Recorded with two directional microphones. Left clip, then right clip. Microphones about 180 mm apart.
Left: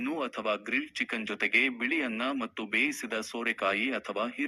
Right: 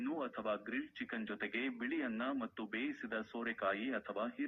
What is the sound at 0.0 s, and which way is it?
Speech, 30° left (ahead or behind).